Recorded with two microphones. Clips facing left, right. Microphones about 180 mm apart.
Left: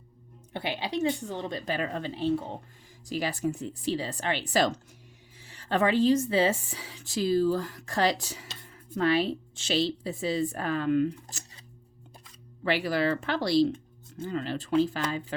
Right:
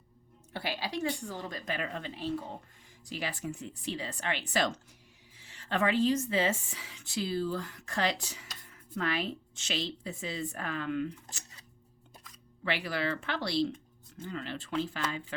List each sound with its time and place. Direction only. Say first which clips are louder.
0.5 s a woman's voice: left 4 dB; 20° left (ahead or behind)
3.1 s a woman's voice: left 8 dB; 40° left (ahead or behind)
8.4 s a sound: left 4 dB; 30° left (ahead or behind)
8.9 s a woman's voice: left 8 dB; 30° left (ahead or behind)
12.6 s a woman's voice: left 6 dB; 40° left (ahead or behind)